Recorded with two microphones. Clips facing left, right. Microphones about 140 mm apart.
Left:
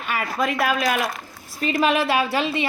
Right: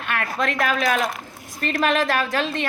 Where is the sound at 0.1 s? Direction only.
5° left (ahead or behind).